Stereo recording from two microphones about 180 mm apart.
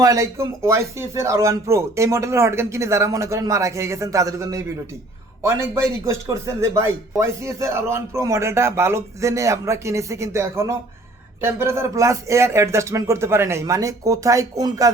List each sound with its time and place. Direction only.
0.0 s speech: 20° right (ahead or behind)